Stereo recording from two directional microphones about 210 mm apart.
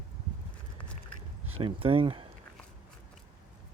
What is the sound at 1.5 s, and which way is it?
Speech, 25° right (ahead or behind).